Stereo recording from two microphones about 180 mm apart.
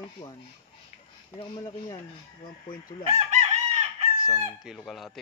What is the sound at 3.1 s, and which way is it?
Chicken, 40° right (ahead or behind).